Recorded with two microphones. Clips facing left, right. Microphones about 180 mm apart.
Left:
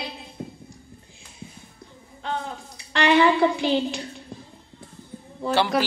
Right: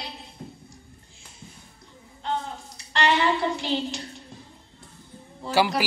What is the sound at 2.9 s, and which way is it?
A woman's voice, 60° left (ahead or behind).